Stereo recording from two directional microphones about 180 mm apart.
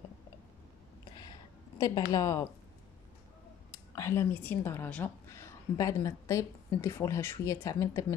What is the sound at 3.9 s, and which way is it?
A woman's voice, 15° left (ahead or behind).